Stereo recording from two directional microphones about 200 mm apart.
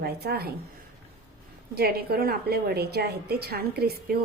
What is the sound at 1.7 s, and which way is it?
A woman's voice, 50° right (ahead or behind).